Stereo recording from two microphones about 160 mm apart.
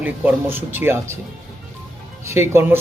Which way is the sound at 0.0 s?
10° right (ahead or behind).